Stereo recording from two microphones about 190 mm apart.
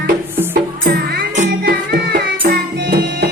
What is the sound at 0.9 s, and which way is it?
Music, 55° right (ahead or behind).